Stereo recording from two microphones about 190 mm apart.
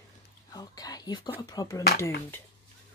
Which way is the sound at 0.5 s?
20° left (ahead or behind).